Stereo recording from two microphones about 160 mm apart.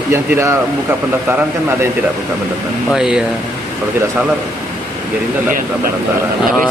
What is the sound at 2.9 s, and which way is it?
Speech, 5° right (ahead or behind).